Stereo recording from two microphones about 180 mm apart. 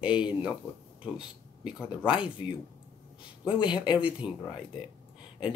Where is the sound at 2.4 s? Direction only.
25° left (ahead or behind).